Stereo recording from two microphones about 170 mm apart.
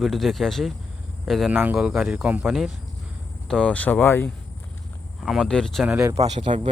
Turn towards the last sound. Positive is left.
turn(degrees=-40)  # may be behind; listen again after turning